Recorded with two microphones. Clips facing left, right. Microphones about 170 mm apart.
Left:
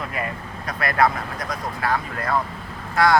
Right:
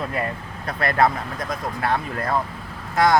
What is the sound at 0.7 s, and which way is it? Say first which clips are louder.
Speech: right 1 dB; 30° right (ahead or behind).